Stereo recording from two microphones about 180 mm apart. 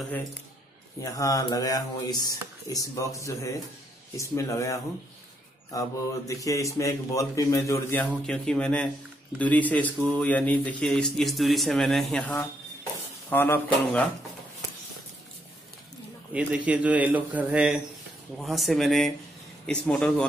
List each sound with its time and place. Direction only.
1.0 s speech: 20° left (ahead or behind)
16.3 s a man's voice: 5° right (ahead or behind)